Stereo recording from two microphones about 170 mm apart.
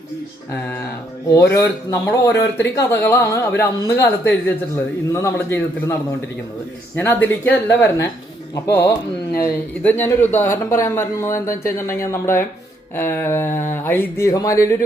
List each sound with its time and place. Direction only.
0.5 s a man's voice: 15° left (ahead or behind)
8.6 s a man's voice: 15° left (ahead or behind)